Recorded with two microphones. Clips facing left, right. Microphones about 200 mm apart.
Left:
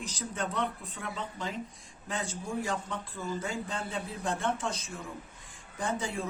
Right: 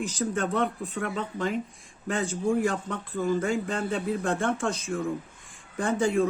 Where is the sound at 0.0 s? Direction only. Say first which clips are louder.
Right 8 dB; 50° right (ahead or behind).